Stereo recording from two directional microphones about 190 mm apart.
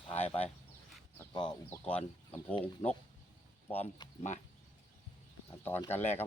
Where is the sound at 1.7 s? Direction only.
5° left (ahead or behind).